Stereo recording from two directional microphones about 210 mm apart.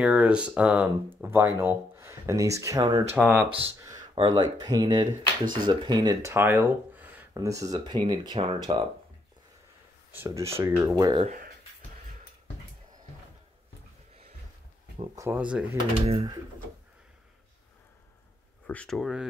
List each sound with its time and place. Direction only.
0.0 s speech: 5° right (ahead or behind)
3.2 s speech: 5° left (ahead or behind)
3.8 s speech: 20° right (ahead or behind)
10.1 s speech: 15° right (ahead or behind)
11.1 s speech: 35° right (ahead or behind)
15.1 s speech: 10° right (ahead or behind)
16.1 s speech: 25° right (ahead or behind)
18.7 s speech: 5° left (ahead or behind)